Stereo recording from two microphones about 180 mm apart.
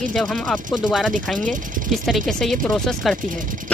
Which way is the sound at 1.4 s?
45° right (ahead or behind).